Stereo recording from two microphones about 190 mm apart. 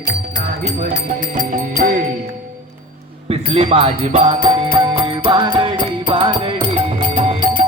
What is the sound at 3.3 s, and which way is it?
Music, 30° right (ahead or behind).